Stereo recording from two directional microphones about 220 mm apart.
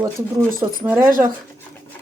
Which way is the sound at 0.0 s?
10° right (ahead or behind).